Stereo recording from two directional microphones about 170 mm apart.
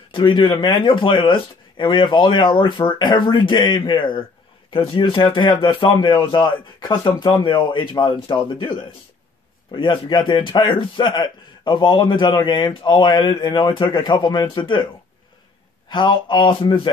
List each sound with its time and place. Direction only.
0.1 s a man's voice: 30° left (ahead or behind)
9.8 s a man's voice: 30° left (ahead or behind)
15.9 s a man's voice: 30° left (ahead or behind)